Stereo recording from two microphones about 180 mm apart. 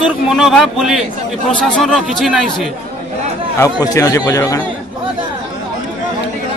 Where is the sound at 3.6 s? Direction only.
20° left (ahead or behind).